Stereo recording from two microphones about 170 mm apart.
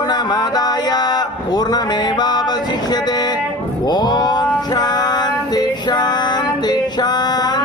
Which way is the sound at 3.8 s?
25° left (ahead or behind).